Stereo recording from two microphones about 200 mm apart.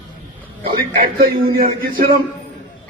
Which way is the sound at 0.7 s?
45° right (ahead or behind).